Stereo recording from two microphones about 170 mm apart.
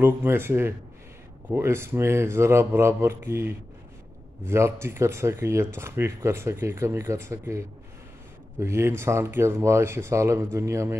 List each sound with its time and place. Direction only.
0.0 s speech: 15° right (ahead or behind)